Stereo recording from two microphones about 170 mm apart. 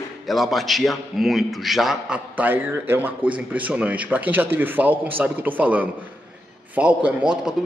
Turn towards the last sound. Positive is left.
turn(degrees=-5)  # may be behind; listen again after turning